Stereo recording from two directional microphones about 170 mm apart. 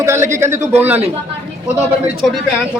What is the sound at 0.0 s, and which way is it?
A man's voice, 15° right (ahead or behind).